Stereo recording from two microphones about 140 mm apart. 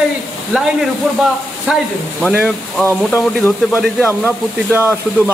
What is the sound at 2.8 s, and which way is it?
Speech, 15° left (ahead or behind).